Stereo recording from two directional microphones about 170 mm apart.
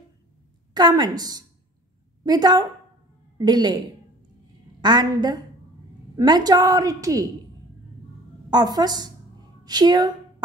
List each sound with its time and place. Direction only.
0.7 s a woman's voice: 25° right (ahead or behind)
8.5 s a woman's voice: 25° right (ahead or behind)